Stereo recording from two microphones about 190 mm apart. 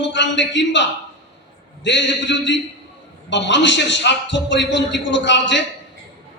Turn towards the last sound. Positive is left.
turn(degrees=70)  # may be behind; listen again after turning